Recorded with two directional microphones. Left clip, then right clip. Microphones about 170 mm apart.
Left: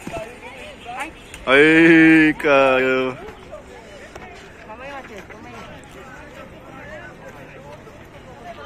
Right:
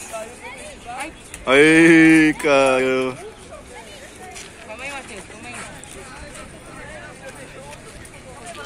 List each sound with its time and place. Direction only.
1.4 s speech: 25° right (ahead or behind)